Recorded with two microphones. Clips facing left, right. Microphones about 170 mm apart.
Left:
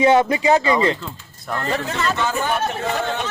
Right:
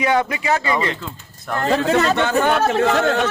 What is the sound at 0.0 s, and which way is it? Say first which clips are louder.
Speech: left 4 dB; 25° left (ahead or behind).